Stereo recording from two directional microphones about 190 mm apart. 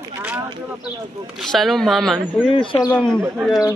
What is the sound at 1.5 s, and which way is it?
Speech, centre (ahead or behind).